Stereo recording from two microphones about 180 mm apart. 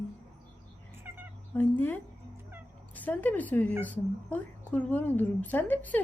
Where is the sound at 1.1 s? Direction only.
10° right (ahead or behind).